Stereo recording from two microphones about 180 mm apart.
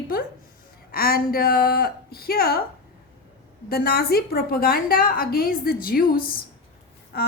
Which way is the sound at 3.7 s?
60° left (ahead or behind).